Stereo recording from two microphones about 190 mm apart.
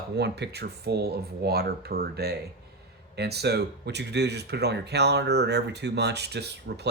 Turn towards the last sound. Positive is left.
turn(degrees=-60)  # may be behind; listen again after turning